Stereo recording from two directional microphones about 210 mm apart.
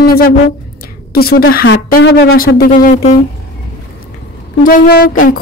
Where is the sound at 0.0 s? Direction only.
45° left (ahead or behind).